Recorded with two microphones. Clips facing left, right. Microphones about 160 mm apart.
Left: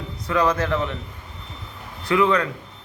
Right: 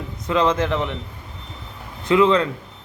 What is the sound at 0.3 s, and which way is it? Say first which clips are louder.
Speech: right 2 dB; 20° right (ahead or behind).